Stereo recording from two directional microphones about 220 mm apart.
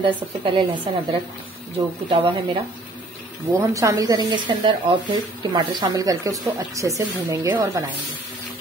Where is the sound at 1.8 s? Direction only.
25° right (ahead or behind).